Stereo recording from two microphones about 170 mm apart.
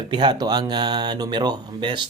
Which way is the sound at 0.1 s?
25° right (ahead or behind).